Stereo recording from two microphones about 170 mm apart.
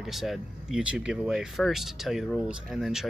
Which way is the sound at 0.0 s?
Centre (ahead or behind).